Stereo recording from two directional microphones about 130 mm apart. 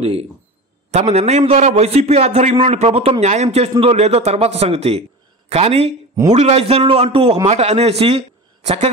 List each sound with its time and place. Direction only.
0.0 s a man's voice: 50° right (ahead or behind)
7.4 s speech: 55° right (ahead or behind)